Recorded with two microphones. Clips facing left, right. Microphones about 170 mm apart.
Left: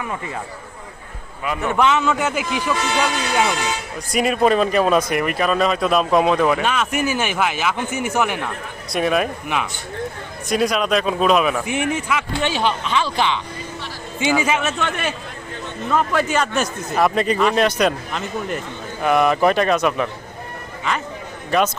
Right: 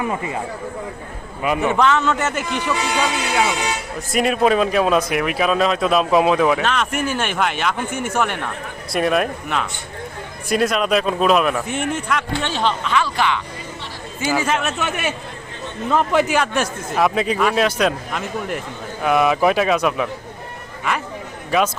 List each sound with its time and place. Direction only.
1.4 s speech: 15° right (ahead or behind)
1.8 s a man's voice: 10° left (ahead or behind)
2.7 s a man's voice: 10° right (ahead or behind); by 12.7 s 5° left (ahead or behind)
12.8 s speech: 25° left (ahead or behind)
14.4 s speech: 5° left (ahead or behind)